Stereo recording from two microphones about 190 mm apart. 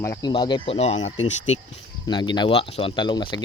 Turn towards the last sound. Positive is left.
turn(degrees=25)  # may be behind; listen again after turning